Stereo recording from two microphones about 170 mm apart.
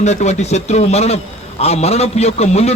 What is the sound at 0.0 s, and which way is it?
A man's voice, 40° left (ahead or behind).